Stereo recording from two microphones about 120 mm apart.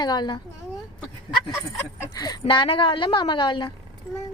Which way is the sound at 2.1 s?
35° left (ahead or behind).